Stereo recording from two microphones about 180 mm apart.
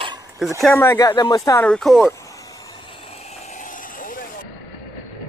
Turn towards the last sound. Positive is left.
turn(degrees=50)  # may be behind; listen again after turning